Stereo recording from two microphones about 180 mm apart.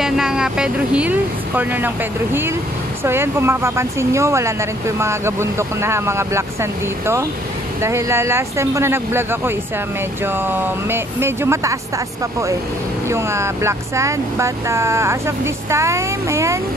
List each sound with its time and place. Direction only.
0.0 s speech: centre (ahead or behind)
3.0 s speech: 15° right (ahead or behind)
13.1 s speech: 15° right (ahead or behind)